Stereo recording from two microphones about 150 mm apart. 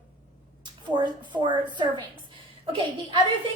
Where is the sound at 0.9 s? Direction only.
30° right (ahead or behind).